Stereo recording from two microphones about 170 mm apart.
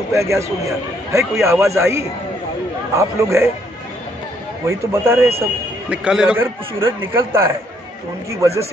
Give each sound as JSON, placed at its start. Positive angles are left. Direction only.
{"t": 0.1, "sound": "a man's voice", "side_deg": -15}
{"t": 4.6, "sound": "a man's voice", "side_deg": -15}